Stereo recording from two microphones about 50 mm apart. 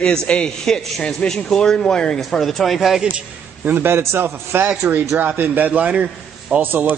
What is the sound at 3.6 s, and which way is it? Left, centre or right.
A man's voice, right.